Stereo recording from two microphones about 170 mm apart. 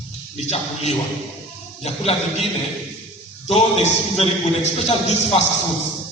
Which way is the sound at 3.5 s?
40° left (ahead or behind).